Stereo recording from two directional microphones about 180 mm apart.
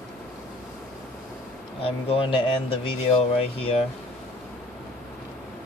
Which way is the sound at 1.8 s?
30° left (ahead or behind).